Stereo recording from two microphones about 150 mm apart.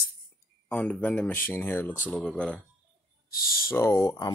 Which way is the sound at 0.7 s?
10° left (ahead or behind).